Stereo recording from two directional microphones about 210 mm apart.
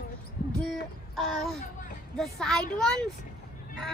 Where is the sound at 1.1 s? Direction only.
Centre (ahead or behind).